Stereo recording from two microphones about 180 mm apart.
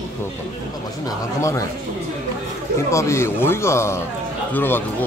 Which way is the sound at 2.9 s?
15° left (ahead or behind).